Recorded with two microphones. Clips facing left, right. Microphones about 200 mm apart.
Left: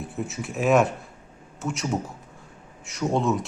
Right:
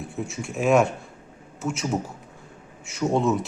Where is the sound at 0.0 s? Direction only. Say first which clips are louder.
Even; centre (ahead or behind).